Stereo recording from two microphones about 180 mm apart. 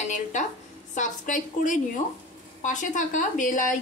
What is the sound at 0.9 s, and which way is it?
Speech, 45° left (ahead or behind).